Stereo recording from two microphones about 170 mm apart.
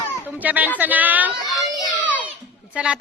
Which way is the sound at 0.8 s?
10° right (ahead or behind).